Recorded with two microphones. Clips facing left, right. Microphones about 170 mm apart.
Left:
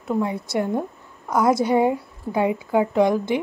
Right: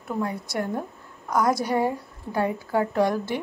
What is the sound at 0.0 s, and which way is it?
A woman's voice, 20° left (ahead or behind).